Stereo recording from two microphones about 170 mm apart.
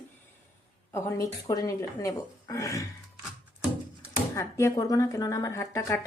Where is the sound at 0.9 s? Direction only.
20° left (ahead or behind).